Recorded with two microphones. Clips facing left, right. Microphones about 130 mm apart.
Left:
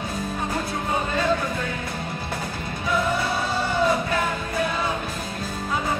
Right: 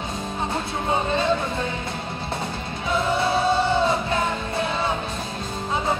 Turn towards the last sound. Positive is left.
turn(degrees=-25)  # may be behind; listen again after turning